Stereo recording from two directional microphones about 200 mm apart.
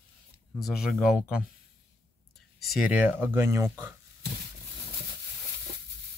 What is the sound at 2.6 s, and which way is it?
Speech, 5° right (ahead or behind).